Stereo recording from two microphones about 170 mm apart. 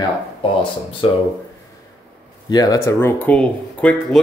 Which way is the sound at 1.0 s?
30° left (ahead or behind).